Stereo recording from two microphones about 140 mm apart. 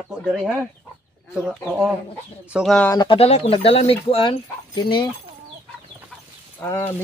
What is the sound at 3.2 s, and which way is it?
Speech, 45° left (ahead or behind).